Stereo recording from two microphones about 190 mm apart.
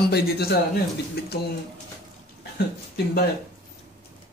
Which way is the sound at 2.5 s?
55° left (ahead or behind).